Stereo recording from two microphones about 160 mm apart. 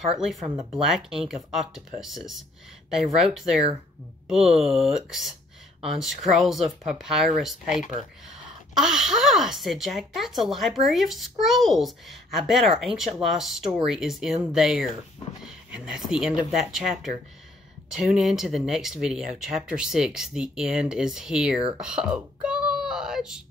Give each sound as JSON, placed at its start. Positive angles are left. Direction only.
{"t": 0.1, "sound": "a woman's voice", "side_deg": 0}
{"t": 7.7, "sound": "speech", "side_deg": 50}
{"t": 8.7, "sound": "a woman's voice", "side_deg": -5}
{"t": 21.7, "sound": "a sound", "side_deg": -5}